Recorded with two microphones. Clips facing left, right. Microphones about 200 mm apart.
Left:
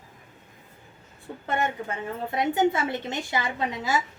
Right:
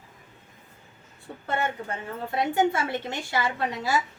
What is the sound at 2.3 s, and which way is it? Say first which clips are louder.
A woman's voice: left 1 dB; 20° left (ahead or behind).